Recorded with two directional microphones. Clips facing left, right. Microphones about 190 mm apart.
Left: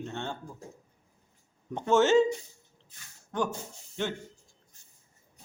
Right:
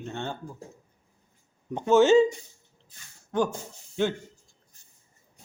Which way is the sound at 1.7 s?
10° right (ahead or behind).